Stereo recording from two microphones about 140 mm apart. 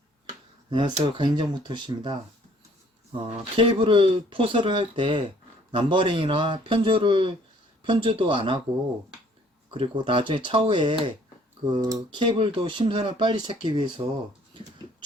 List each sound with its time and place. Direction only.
0.7 s speech: 35° right (ahead or behind)
9.6 s speech: 35° right (ahead or behind)